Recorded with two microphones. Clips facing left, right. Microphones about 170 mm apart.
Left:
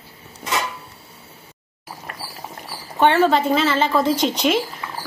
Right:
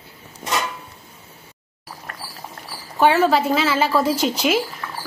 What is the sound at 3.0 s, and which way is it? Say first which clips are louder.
Speech: even; 5° right (ahead or behind).